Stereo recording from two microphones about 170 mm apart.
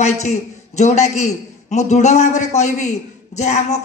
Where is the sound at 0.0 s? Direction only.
40° left (ahead or behind).